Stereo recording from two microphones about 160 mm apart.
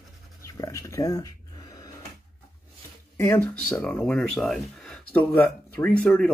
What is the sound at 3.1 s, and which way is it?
Speech, 15° left (ahead or behind).